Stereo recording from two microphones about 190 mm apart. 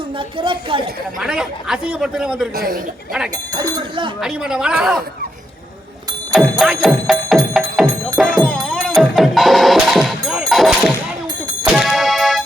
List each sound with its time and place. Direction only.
0.2 s a woman's voice: 25° right (ahead or behind)
1.2 s a man's voice: 5° right (ahead or behind)
2.6 s a man's voice: 50° right (ahead or behind)
3.5 s a woman's voice: 20° right (ahead or behind)
4.2 s a man's voice: 5° right (ahead or behind)
6.3 s speech: 5° right (ahead or behind)
8.2 s music: centre (ahead or behind)
10.5 s a sound: centre (ahead or behind)
11.7 s music: centre (ahead or behind)